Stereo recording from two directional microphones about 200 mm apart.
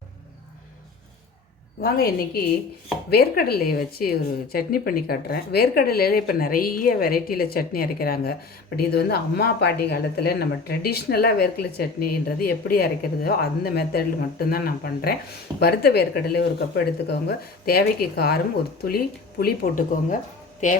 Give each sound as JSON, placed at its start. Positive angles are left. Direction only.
{"t": 1.8, "sound": "a woman's voice", "side_deg": 50}